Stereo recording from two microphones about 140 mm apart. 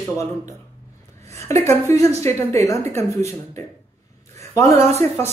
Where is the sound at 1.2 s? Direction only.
20° left (ahead or behind).